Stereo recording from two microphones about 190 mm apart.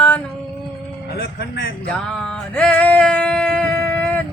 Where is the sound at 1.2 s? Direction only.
60° left (ahead or behind).